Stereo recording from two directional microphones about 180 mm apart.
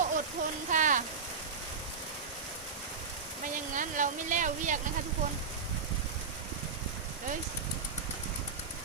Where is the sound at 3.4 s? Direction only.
45° right (ahead or behind).